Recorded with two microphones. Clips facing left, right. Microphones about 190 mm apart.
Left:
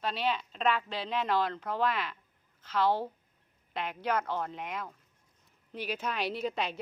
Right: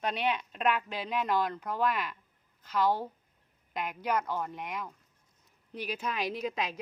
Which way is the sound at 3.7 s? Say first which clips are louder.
Even; 10° right (ahead or behind).